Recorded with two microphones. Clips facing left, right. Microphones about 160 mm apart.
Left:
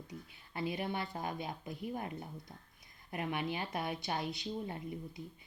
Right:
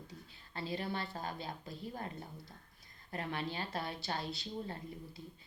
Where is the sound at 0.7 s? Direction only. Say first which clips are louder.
Right 1 dB; 20° left (ahead or behind).